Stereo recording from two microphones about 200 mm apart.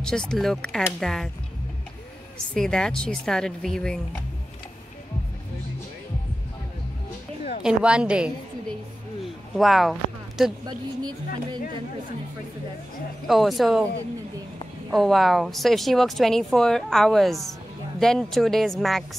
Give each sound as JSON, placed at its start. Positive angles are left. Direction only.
{"t": 0.0, "sound": "speech", "side_deg": 5}
{"t": 2.5, "sound": "speech", "side_deg": 5}
{"t": 7.6, "sound": "speech", "side_deg": -5}
{"t": 9.6, "sound": "speech", "side_deg": 0}
{"t": 10.7, "sound": "speech", "side_deg": -20}
{"t": 13.3, "sound": "speech", "side_deg": 0}
{"t": 14.9, "sound": "speech", "side_deg": 0}